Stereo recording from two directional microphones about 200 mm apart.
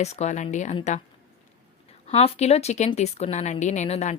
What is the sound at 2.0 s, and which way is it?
A woman's voice, 30° left (ahead or behind).